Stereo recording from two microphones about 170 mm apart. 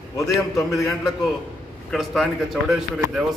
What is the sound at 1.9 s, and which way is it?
Speech, centre (ahead or behind).